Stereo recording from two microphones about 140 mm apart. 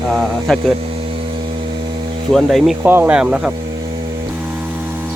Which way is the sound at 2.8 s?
15° right (ahead or behind).